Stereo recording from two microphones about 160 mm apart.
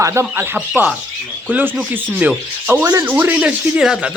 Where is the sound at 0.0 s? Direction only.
15° right (ahead or behind).